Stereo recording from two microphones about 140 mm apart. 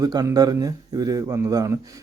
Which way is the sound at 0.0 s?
25° right (ahead or behind).